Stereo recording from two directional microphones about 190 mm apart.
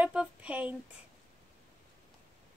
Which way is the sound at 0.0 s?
5° right (ahead or behind).